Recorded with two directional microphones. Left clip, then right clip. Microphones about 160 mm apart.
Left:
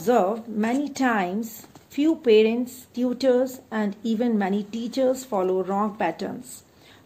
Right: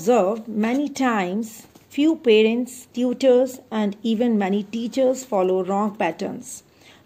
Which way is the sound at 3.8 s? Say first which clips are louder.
Right 4 dB; 10° left (ahead or behind).